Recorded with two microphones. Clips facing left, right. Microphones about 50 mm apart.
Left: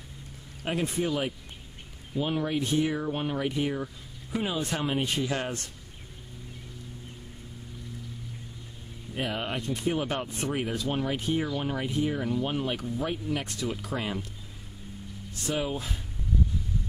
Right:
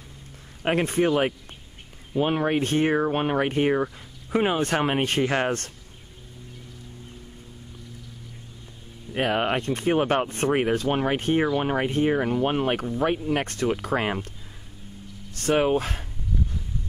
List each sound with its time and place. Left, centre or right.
0.7 s speech: right
9.1 s speech: right
15.3 s speech: right